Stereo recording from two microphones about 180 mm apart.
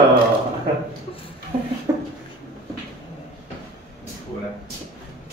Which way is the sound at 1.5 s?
35° right (ahead or behind).